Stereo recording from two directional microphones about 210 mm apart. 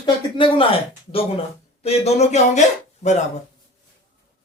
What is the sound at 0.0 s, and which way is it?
Speech, 25° left (ahead or behind).